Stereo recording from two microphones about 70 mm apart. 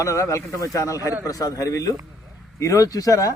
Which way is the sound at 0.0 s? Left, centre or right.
Left.